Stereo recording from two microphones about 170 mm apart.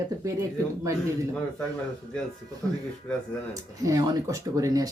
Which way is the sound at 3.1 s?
10° left (ahead or behind).